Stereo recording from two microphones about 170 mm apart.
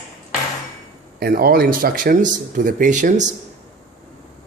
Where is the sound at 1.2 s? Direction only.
65° right (ahead or behind); by 3.3 s 45° right (ahead or behind).